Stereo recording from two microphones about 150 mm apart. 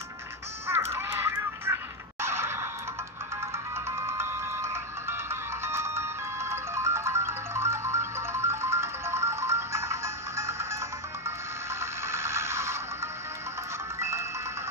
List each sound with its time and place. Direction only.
0.7 s music: 15° right (ahead or behind)